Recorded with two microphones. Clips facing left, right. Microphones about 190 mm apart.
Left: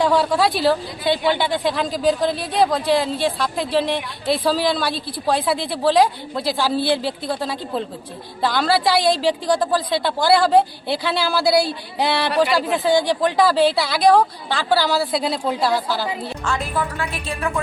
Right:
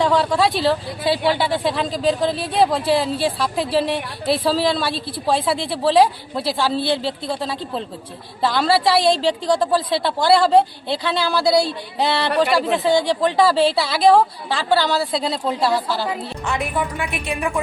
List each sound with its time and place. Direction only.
0.0 s a woman's voice: centre (ahead or behind)
16.5 s a woman's voice: 15° right (ahead or behind)